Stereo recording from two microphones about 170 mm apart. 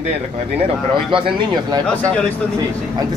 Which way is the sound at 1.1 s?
30° right (ahead or behind).